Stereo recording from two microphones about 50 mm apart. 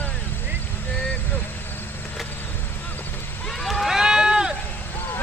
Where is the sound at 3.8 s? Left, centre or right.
Centre.